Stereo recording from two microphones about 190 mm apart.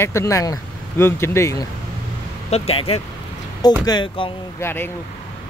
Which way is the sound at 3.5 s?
20° left (ahead or behind).